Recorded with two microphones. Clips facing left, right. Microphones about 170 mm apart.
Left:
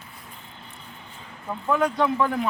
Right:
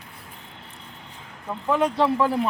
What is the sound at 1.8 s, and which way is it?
Speech, 30° right (ahead or behind).